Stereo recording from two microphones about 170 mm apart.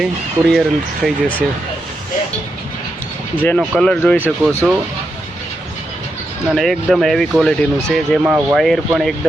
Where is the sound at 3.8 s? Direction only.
5° left (ahead or behind).